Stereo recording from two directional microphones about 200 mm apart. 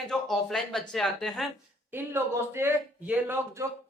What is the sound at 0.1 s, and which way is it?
Speech, centre (ahead or behind).